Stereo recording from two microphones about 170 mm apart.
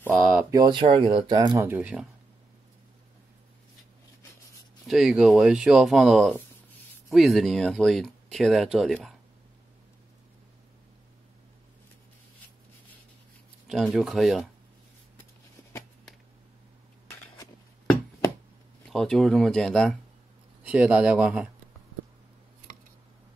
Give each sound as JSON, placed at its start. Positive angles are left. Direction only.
{"t": 0.1, "sound": "a sound", "side_deg": -5}
{"t": 0.5, "sound": "speech", "side_deg": -25}
{"t": 1.6, "sound": "speech", "side_deg": -10}
{"t": 4.8, "sound": "speech", "side_deg": -5}
{"t": 13.7, "sound": "speech", "side_deg": 0}
{"t": 18.9, "sound": "speech", "side_deg": 0}
{"t": 20.6, "sound": "speech", "side_deg": -10}